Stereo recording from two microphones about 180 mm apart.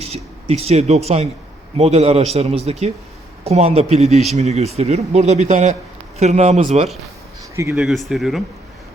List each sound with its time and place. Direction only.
0.0 s speech: 35° right (ahead or behind)
7.5 s speech: 15° right (ahead or behind)
7.8 s speech: centre (ahead or behind)